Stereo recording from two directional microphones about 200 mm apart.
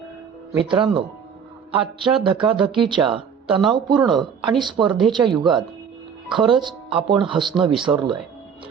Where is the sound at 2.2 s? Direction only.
25° right (ahead or behind).